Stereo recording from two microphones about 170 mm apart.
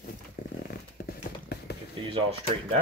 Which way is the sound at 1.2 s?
70° left (ahead or behind).